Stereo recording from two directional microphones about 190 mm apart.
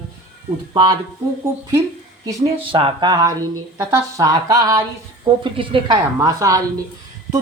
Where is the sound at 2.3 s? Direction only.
25° right (ahead or behind).